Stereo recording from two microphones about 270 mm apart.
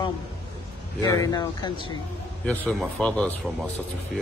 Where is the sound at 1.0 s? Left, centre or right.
Centre.